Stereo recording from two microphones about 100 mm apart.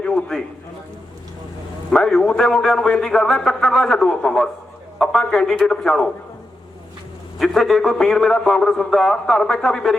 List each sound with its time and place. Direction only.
0.0 s a sound: 10° left (ahead or behind)
1.9 s a man's voice: 10° left (ahead or behind)
7.3 s a man's voice: 5° left (ahead or behind)